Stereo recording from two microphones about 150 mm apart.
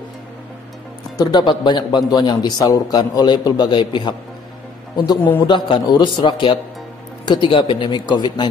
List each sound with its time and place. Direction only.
1.1 s a man's voice: 25° left (ahead or behind)